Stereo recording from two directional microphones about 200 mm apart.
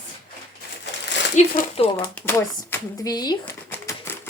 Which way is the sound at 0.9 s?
60° left (ahead or behind).